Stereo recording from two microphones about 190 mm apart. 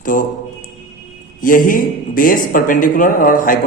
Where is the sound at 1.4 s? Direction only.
45° left (ahead or behind).